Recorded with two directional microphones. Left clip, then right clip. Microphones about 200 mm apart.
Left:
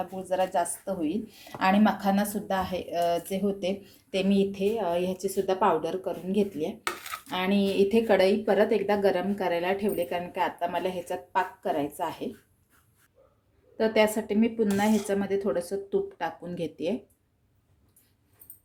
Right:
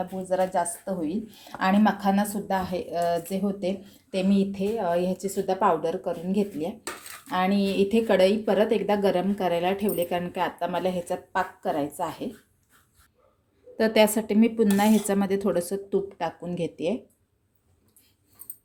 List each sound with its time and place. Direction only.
0.0 s a woman's voice: centre (ahead or behind)
13.7 s speech: 25° right (ahead or behind); by 17.0 s 10° right (ahead or behind)